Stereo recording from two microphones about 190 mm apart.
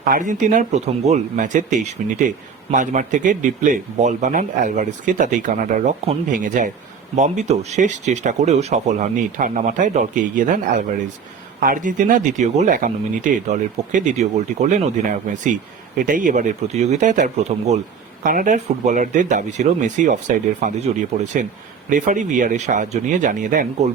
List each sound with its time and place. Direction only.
0.1 s speech: 40° right (ahead or behind)